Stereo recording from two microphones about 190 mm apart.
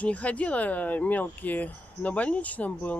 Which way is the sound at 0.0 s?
5° left (ahead or behind).